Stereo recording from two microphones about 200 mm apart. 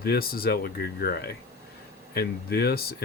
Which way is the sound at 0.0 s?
50° left (ahead or behind).